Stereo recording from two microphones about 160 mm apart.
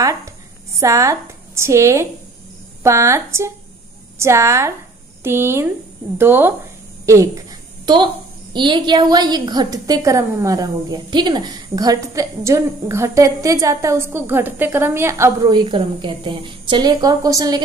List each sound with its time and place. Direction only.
0.0 s a woman's voice: 20° right (ahead or behind)
7.8 s a woman's voice: 30° right (ahead or behind)